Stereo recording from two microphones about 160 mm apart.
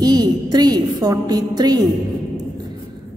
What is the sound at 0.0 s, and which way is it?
A woman's voice, 25° right (ahead or behind).